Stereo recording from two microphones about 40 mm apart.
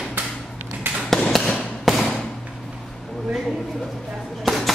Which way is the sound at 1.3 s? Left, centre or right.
Centre.